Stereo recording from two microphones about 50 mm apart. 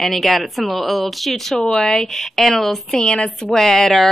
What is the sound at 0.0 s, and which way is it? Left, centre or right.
A woman's voice, centre.